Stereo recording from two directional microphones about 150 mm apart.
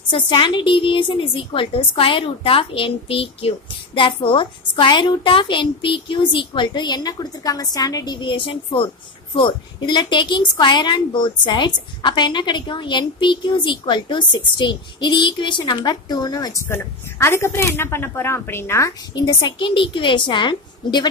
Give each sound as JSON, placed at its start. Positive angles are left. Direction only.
{"t": 0.1, "sound": "a woman's voice", "side_deg": 35}